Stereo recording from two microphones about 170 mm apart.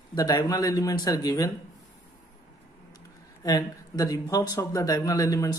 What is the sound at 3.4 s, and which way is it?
Speech, 20° left (ahead or behind).